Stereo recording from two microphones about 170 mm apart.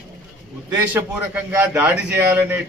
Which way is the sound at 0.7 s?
15° right (ahead or behind).